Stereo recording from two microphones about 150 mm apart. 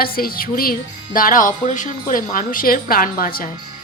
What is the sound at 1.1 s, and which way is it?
Speech, 65° left (ahead or behind).